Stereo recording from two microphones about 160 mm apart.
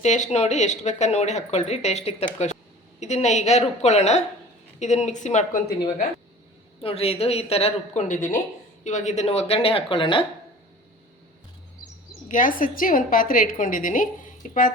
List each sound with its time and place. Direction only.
0.0 s speech: 45° left (ahead or behind)
6.8 s a woman's voice: 40° left (ahead or behind)
12.3 s a woman's voice: 55° left (ahead or behind)